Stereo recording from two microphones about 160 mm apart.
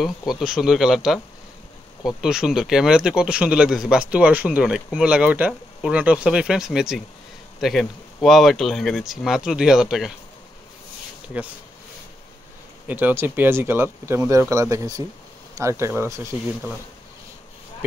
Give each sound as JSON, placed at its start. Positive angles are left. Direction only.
{"t": 0.0, "sound": "speech", "side_deg": 0}
{"t": 12.8, "sound": "speech", "side_deg": -10}